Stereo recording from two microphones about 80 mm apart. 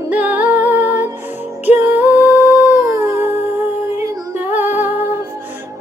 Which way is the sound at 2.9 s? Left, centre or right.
Right.